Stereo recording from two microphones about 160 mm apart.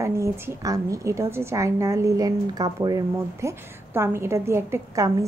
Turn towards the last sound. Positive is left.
turn(degrees=-20)  # may be behind; listen again after turning